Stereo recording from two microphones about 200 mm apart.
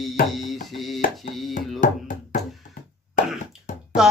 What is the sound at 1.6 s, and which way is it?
Music, 40° left (ahead or behind).